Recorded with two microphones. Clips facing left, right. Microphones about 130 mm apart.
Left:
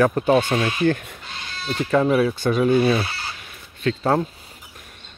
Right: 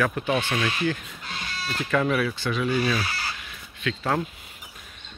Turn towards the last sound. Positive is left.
turn(degrees=35)  # may be behind; listen again after turning